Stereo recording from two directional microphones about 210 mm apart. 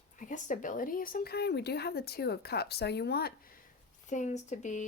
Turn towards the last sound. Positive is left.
turn(degrees=35)  # may be behind; listen again after turning